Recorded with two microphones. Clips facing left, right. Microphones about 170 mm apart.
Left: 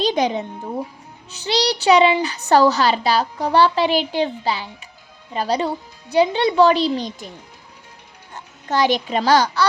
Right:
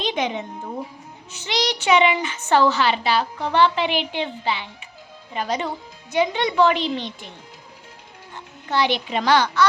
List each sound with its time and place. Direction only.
0.0 s a child's voice: 35° left (ahead or behind)
8.7 s a child's voice: 40° left (ahead or behind)